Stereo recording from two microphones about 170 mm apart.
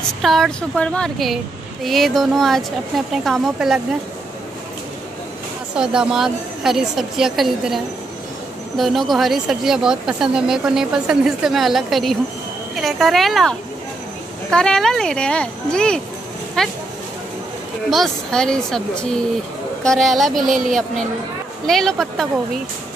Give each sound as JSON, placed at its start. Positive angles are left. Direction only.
{"t": 0.2, "sound": "speech", "side_deg": 0}
{"t": 5.8, "sound": "speech", "side_deg": -5}
{"t": 17.8, "sound": "speech", "side_deg": 0}
{"t": 20.4, "sound": "speech", "side_deg": -50}
{"t": 21.6, "sound": "speech", "side_deg": 0}